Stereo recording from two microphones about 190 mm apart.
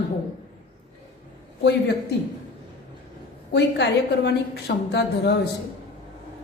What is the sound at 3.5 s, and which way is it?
A woman's voice, 60° left (ahead or behind).